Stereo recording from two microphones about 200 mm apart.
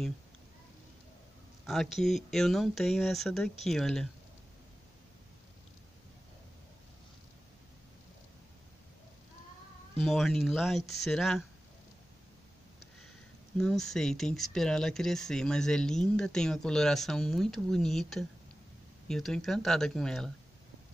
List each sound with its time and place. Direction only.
1.7 s speech: centre (ahead or behind)
10.0 s speech: centre (ahead or behind)
13.6 s speech: centre (ahead or behind)